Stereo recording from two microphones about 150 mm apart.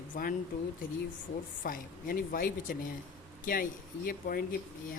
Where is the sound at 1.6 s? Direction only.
70° left (ahead or behind).